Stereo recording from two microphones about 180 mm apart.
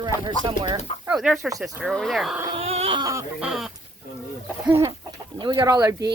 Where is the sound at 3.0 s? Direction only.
20° right (ahead or behind).